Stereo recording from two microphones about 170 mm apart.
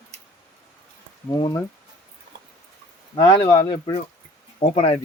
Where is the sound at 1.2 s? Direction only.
20° left (ahead or behind).